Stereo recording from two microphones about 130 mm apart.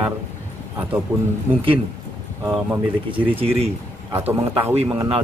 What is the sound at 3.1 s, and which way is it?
Speech, 50° right (ahead or behind).